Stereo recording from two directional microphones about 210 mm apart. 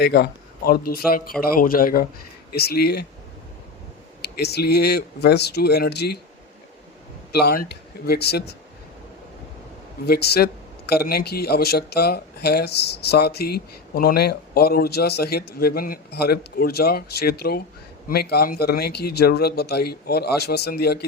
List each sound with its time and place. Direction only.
0.0 s speech: 50° left (ahead or behind)
4.2 s speech: 50° left (ahead or behind)
7.3 s speech: 45° left (ahead or behind)
10.1 s speech: 50° left (ahead or behind)